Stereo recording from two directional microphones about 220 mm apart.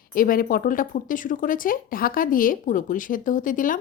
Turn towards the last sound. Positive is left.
turn(degrees=35)  # may be behind; listen again after turning